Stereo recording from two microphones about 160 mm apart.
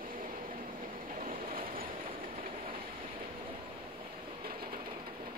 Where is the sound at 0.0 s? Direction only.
60° right (ahead or behind).